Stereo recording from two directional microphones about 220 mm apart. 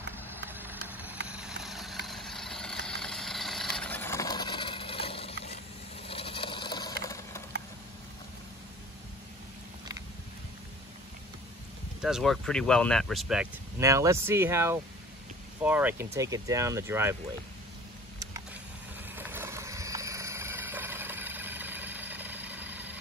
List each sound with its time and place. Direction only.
0.5 s vehicle: 10° right (ahead or behind); by 5.6 s 25° left (ahead or behind)
6.0 s a sound: 25° left (ahead or behind)
12.0 s speech: centre (ahead or behind)
13.7 s speech: 15° right (ahead or behind)
18.2 s a sound: 15° right (ahead or behind)
19.1 s vehicle: 10° right (ahead or behind)